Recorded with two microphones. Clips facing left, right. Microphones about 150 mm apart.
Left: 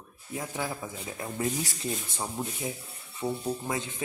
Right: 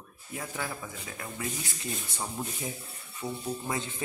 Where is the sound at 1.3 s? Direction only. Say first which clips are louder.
Left 7 dB; 35° left (ahead or behind).